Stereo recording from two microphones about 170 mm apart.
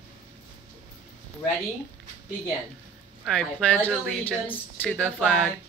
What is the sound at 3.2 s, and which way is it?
Speech, 5° left (ahead or behind).